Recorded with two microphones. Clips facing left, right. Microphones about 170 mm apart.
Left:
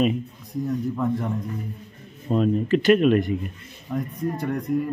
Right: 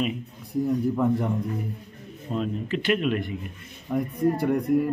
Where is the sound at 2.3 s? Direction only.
45° left (ahead or behind).